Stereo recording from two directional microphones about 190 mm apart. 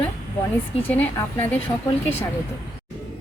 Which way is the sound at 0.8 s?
10° left (ahead or behind).